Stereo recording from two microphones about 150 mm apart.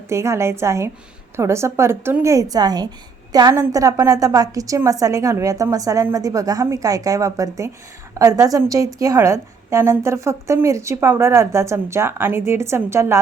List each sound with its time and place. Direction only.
0.1 s a woman's voice: 20° right (ahead or behind)